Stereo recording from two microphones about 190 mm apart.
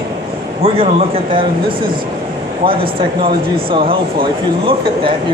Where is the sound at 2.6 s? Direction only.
30° right (ahead or behind).